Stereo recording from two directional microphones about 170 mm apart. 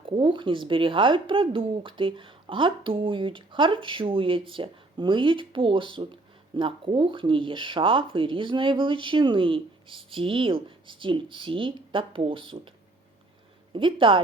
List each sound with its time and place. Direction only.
0.0 s speech: 30° right (ahead or behind)
13.7 s speech: 30° right (ahead or behind)